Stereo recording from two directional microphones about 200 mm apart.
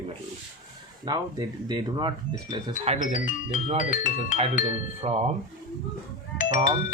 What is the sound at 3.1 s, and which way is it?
Speech, 40° left (ahead or behind).